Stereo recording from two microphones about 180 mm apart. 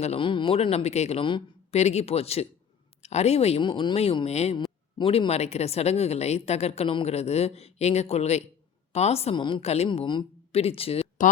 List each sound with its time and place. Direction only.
0.0 s a woman's voice: 30° left (ahead or behind)